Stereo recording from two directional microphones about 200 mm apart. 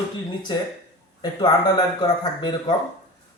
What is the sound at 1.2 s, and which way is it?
A man's voice, 20° left (ahead or behind).